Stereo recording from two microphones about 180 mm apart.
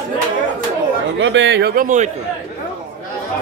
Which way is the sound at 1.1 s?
85° right.